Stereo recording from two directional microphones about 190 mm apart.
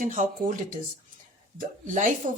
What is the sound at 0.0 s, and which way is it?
Speech, 40° right (ahead or behind).